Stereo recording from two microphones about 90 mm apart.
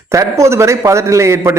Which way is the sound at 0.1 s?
35° right (ahead or behind).